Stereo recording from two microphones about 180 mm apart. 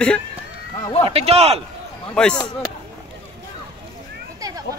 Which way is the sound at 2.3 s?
20° left (ahead or behind).